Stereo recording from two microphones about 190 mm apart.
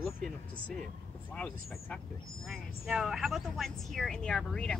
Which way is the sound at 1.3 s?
5° left (ahead or behind).